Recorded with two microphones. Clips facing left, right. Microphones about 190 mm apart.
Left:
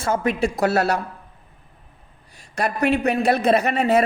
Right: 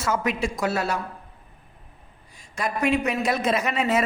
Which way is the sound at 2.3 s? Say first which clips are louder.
Left 4 dB; 70° left (ahead or behind).